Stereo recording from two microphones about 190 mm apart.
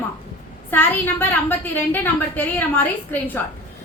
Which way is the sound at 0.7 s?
10° left (ahead or behind).